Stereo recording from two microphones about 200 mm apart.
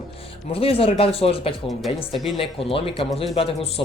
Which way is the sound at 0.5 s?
30° left (ahead or behind).